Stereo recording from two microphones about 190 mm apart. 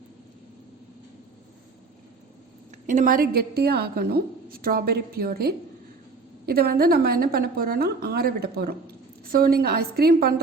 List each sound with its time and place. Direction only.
2.8 s a woman's voice: 45° right (ahead or behind)